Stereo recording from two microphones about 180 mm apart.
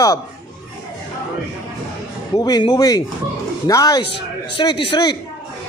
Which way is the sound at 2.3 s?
20° left (ahead or behind).